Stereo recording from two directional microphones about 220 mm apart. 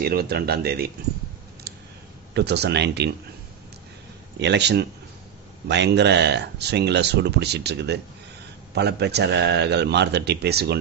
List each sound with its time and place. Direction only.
0.0 s speech: 45° right (ahead or behind)
1.7 s a sound: 45° right (ahead or behind)
2.3 s speech: 50° right (ahead or behind)
4.4 s speech: 50° right (ahead or behind)